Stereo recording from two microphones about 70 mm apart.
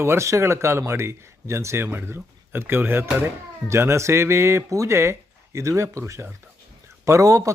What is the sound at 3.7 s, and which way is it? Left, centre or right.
A man's voice, right.